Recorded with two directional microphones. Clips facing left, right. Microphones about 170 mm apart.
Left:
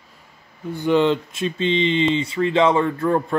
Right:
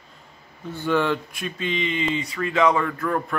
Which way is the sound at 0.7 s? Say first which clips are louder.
Left 5 dB; 15° left (ahead or behind).